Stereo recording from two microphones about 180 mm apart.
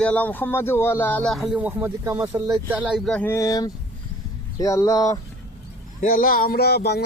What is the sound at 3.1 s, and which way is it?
Speech, 10° left (ahead or behind).